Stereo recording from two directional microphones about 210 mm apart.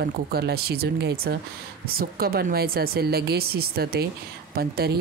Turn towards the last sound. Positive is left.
turn(degrees=-45)  # may be behind; listen again after turning